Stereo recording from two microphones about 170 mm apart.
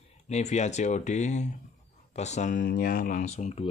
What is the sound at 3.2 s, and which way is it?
Speech, 40° left (ahead or behind).